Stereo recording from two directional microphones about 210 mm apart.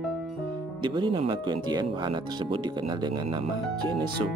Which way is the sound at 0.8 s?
25° right (ahead or behind).